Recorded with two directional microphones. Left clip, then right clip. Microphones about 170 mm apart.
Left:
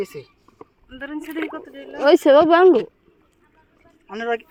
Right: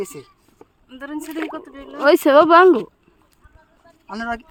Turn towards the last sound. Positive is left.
turn(degrees=-50)  # may be behind; listen again after turning